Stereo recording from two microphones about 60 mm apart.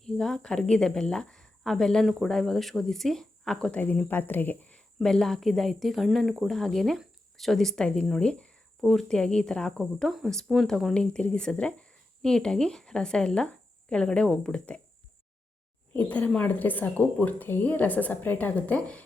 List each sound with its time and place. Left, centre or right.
0.0 s a woman's voice: centre
3.8 s a woman's voice: left
5.0 s speech: centre
8.2 s a sound: centre
8.9 s speech: centre
10.0 s speech: centre
10.9 s speech: centre
15.9 s a woman's voice: left